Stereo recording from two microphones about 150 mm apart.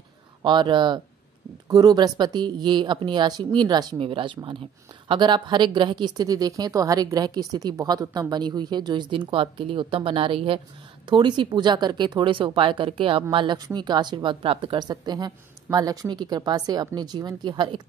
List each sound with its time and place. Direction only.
0.4 s speech: 30° right (ahead or behind)